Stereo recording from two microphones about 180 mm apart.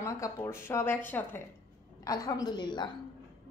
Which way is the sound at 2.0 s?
20° left (ahead or behind).